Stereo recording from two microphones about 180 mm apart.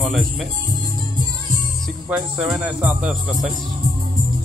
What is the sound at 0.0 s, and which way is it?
Speech, centre (ahead or behind).